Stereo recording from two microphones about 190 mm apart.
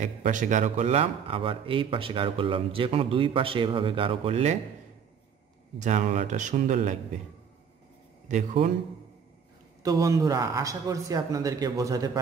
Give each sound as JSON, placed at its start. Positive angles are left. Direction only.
{"t": 0.0, "sound": "speech", "side_deg": -40}
{"t": 5.8, "sound": "speech", "side_deg": -40}
{"t": 8.3, "sound": "speech", "side_deg": -40}
{"t": 9.8, "sound": "speech", "side_deg": -15}